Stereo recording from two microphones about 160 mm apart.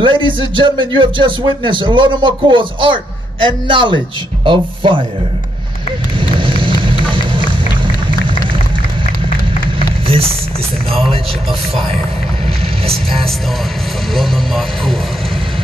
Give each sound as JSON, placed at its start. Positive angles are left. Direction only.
{"t": 0.0, "sound": "a man's voice", "side_deg": -30}
{"t": 6.8, "sound": "music", "side_deg": -30}
{"t": 14.1, "sound": "speech", "side_deg": 0}